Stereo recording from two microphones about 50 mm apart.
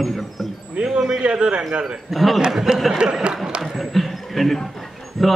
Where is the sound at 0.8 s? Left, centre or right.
Centre.